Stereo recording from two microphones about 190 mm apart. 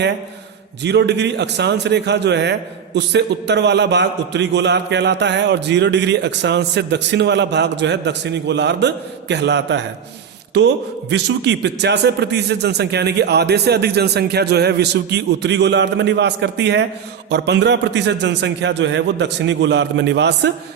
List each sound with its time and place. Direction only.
0.8 s a man's voice: 65° right (ahead or behind)
11.1 s a man's voice: 65° right (ahead or behind)